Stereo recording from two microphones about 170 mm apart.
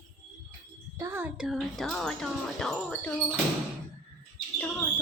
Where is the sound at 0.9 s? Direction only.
10° right (ahead or behind).